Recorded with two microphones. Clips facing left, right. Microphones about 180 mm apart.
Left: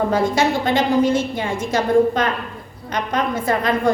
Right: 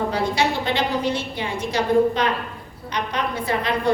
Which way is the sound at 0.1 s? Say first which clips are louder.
Left 4 dB; 45° left (ahead or behind).